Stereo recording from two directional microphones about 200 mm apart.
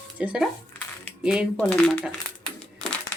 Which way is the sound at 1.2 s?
5° right (ahead or behind).